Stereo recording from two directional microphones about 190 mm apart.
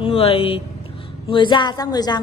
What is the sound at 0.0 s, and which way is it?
A woman's voice, 30° left (ahead or behind).